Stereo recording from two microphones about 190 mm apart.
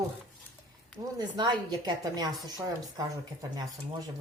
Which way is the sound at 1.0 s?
20° right (ahead or behind).